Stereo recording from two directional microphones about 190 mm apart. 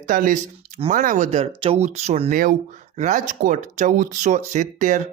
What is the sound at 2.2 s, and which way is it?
Speech, 50° right (ahead or behind).